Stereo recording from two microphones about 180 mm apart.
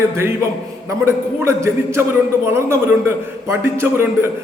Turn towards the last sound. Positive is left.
turn(degrees=-15)  # may be behind; listen again after turning